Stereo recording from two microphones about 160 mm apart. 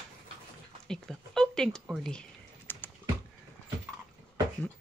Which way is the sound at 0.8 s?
5° left (ahead or behind).